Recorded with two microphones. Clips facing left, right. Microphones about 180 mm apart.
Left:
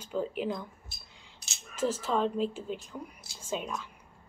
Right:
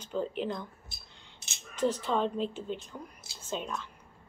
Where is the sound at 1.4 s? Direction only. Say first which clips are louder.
Right 1 dB; 25° right (ahead or behind).